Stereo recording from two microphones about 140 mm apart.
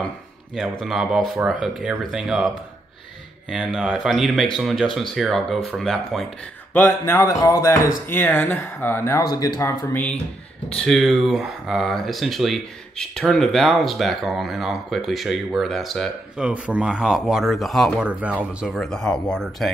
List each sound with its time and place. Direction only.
0.6 s speech: centre (ahead or behind)
6.7 s speech: 15° left (ahead or behind)
9.2 s speech: 30° left (ahead or behind)
10.8 s speech: centre (ahead or behind)